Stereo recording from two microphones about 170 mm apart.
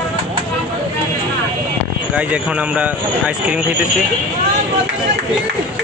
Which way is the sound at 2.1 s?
5° right (ahead or behind).